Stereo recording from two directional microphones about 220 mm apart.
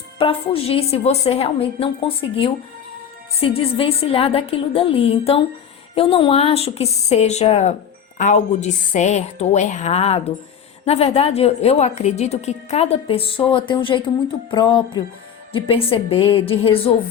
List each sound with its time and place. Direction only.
0.2 s a woman's voice: 25° left (ahead or behind)